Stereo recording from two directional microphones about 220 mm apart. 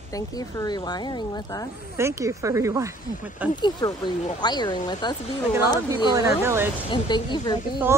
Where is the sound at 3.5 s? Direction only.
20° left (ahead or behind).